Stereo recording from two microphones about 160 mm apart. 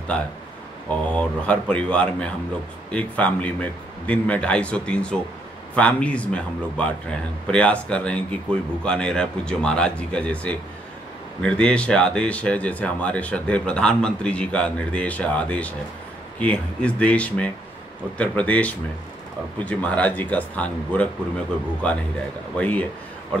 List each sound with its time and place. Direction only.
1.1 s speech: 10° left (ahead or behind)